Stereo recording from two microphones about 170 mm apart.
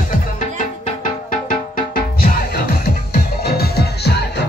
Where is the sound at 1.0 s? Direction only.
50° left (ahead or behind).